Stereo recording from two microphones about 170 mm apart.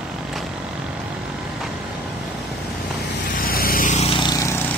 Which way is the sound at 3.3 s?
60° left (ahead or behind).